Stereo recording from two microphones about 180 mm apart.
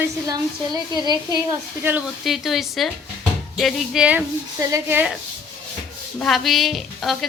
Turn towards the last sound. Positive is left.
turn(degrees=0)  # may be behind; listen again after turning